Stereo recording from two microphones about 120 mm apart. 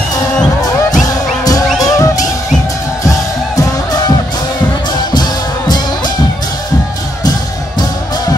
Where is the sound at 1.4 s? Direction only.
30° left (ahead or behind).